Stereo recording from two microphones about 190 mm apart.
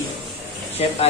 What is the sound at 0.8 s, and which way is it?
Speech, 30° left (ahead or behind).